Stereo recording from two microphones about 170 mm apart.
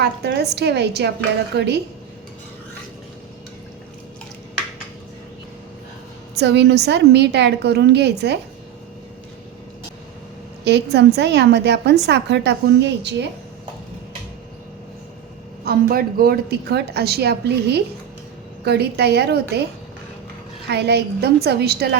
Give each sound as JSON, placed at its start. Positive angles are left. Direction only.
{"t": 0.0, "sound": "a woman's voice", "side_deg": -75}
{"t": 6.3, "sound": "a woman's voice", "side_deg": -90}
{"t": 10.6, "sound": "a woman's voice", "side_deg": -90}
{"t": 15.6, "sound": "a woman's voice", "side_deg": -60}
{"t": 20.7, "sound": "a woman's voice", "side_deg": -75}